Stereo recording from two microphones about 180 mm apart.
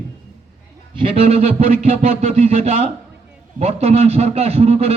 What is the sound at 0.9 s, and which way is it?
Speech, 30° right (ahead or behind).